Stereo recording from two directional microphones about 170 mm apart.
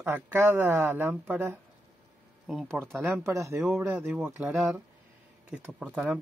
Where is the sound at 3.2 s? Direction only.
15° right (ahead or behind).